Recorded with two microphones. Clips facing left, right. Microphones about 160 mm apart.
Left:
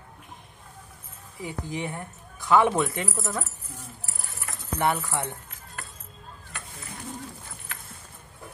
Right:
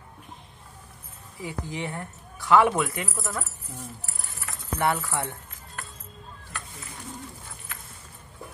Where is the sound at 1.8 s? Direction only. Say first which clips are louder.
Even; 15° left (ahead or behind).